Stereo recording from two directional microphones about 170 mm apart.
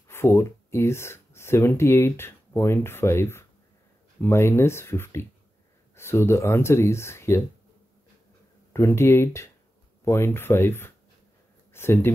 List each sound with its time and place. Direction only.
0.1 s speech: 15° left (ahead or behind)
8.7 s speech: 15° left (ahead or behind)